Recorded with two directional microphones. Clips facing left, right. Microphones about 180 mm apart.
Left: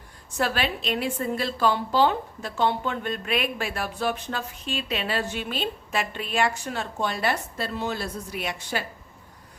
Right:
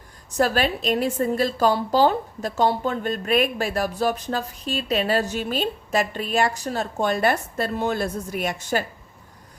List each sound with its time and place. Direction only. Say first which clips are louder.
0.3 s a woman's voice: right 5 dB; 40° right (ahead or behind)